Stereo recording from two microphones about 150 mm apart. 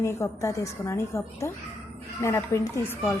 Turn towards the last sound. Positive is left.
turn(degrees=20)  # may be behind; listen again after turning